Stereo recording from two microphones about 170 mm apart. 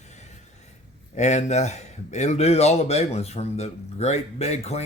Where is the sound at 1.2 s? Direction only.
45° left (ahead or behind).